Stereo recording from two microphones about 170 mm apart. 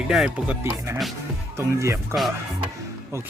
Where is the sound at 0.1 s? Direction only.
5° right (ahead or behind).